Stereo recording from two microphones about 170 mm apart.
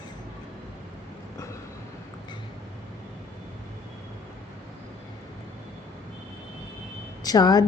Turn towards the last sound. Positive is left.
turn(degrees=25)  # may be behind; listen again after turning